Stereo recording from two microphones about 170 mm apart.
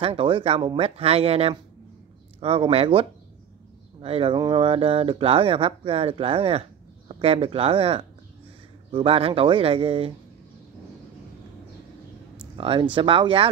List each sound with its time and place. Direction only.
0.0 s speech: 30° right (ahead or behind)
12.5 s speech: 30° right (ahead or behind)